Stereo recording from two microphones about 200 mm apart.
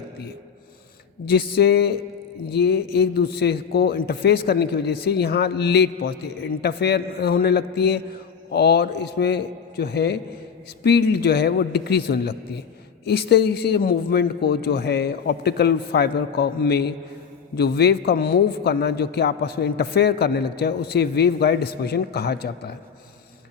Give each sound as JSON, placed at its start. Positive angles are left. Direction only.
{"t": 1.3, "sound": "a man's voice", "side_deg": 55}